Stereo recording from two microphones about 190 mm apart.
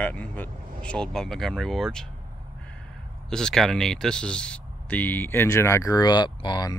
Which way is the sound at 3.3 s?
5° left (ahead or behind).